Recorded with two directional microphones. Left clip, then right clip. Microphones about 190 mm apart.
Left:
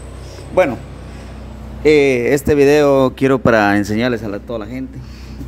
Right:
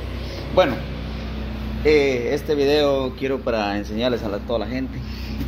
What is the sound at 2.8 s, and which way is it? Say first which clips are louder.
Speech: left 8 dB; 45° left (ahead or behind).